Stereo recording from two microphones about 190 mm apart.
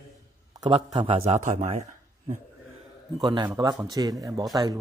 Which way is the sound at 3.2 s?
20° right (ahead or behind).